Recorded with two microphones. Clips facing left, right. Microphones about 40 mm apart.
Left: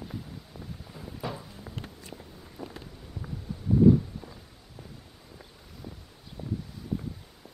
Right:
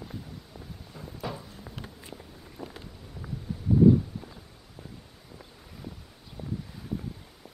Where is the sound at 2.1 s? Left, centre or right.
Centre.